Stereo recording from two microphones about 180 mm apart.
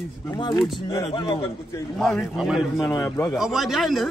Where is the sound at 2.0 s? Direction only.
Centre (ahead or behind).